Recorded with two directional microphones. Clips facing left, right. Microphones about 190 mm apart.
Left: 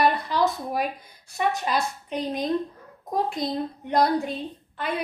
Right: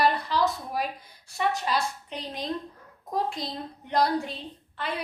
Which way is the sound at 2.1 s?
50° left (ahead or behind).